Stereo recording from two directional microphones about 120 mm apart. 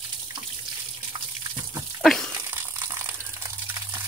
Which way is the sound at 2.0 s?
5° left (ahead or behind).